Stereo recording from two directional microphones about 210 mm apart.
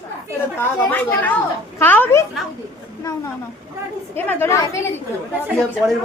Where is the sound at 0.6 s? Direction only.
10° left (ahead or behind).